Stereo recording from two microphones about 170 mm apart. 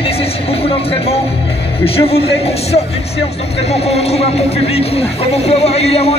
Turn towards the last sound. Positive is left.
turn(degrees=35)  # may be behind; listen again after turning